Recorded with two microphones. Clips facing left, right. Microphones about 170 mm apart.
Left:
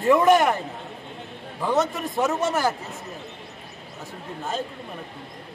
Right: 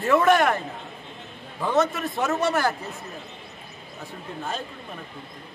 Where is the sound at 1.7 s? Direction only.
15° left (ahead or behind).